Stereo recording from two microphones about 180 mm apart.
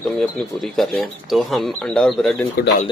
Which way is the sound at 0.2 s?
Centre (ahead or behind).